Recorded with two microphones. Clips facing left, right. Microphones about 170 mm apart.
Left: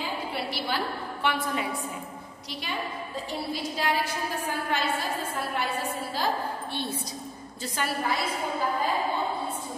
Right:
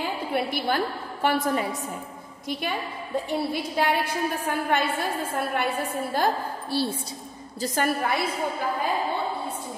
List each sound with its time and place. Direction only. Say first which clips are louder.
0.0 s a woman's voice: right 5 dB; 55° right (ahead or behind)
2.5 s a woman's voice: right 4 dB; 55° right (ahead or behind)
6.7 s a woman's voice: right 6 dB; 35° right (ahead or behind)
7.6 s a woman's voice: right 5 dB; 45° right (ahead or behind)